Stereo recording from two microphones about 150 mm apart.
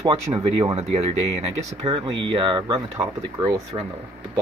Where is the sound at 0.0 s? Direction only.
30° right (ahead or behind).